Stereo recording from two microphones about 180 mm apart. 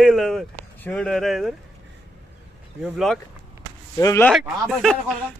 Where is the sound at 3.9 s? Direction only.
20° left (ahead or behind).